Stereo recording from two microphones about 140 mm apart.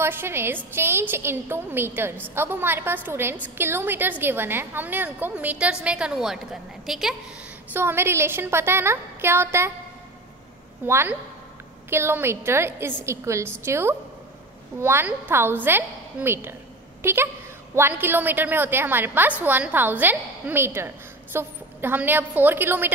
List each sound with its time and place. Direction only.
0.0 s a woman's voice: 15° right (ahead or behind)
7.7 s a woman's voice: 15° right (ahead or behind)
10.9 s a woman's voice: 15° right (ahead or behind)